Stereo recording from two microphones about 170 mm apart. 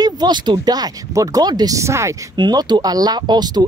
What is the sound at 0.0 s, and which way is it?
Speech, 25° right (ahead or behind).